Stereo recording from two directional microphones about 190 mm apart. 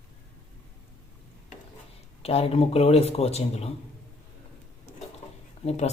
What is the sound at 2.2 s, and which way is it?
Speech, 30° left (ahead or behind).